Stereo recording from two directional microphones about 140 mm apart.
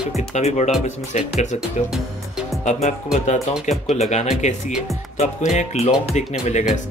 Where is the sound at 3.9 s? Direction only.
55° left (ahead or behind).